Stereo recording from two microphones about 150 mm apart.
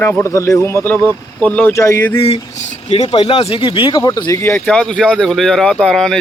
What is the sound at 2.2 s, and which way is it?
Speech, 40° left (ahead or behind).